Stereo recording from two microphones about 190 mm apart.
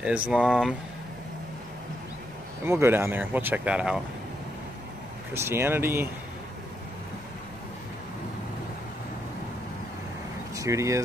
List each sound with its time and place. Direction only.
0.3 s speech: centre (ahead or behind)
2.6 s speech: 10° right (ahead or behind)
5.3 s speech: 15° right (ahead or behind)
10.5 s speech: 15° right (ahead or behind)